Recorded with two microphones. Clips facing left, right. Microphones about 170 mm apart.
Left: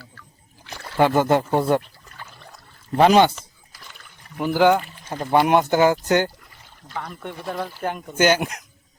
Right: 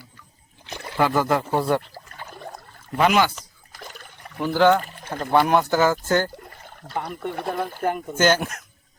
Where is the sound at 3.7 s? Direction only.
50° right (ahead or behind).